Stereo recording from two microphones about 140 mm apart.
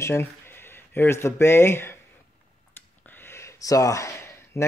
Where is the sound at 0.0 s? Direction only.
15° left (ahead or behind).